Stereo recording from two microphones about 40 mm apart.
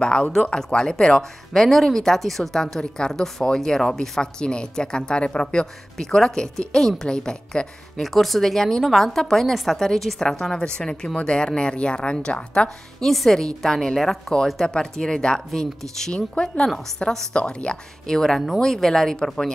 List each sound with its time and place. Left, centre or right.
0.0 s speech: left
1.5 s speech: centre
4.4 s speech: left
8.0 s a woman's voice: centre
10.4 s a woman's voice: centre
10.8 s speech: centre
12.6 s a woman's voice: centre
16.1 s speech: left
16.6 s speech: centre
17.3 s speech: left
18.0 s speech: centre